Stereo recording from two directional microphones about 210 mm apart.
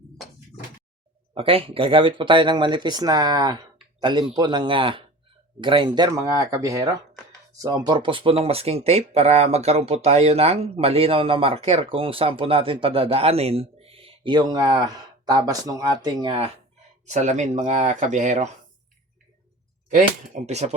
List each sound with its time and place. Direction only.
1.3 s speech: 25° right (ahead or behind)
17.1 s speech: 35° right (ahead or behind)
20.3 s speech: 35° right (ahead or behind)